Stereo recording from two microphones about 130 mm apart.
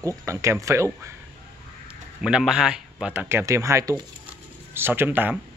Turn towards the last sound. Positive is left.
turn(degrees=-15)  # may be behind; listen again after turning